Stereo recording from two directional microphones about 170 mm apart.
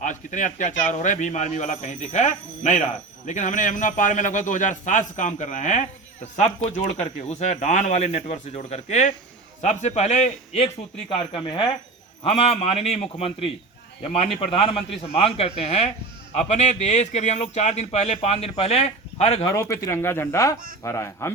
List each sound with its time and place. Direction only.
0.0 s a man's voice: 50° left (ahead or behind)
11.1 s speech: 30° left (ahead or behind)
14.5 s speech: 35° left (ahead or behind)
19.5 s speech: 15° left (ahead or behind)